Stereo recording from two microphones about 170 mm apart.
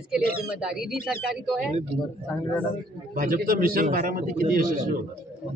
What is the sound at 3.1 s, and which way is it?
A man's voice, 55° right (ahead or behind).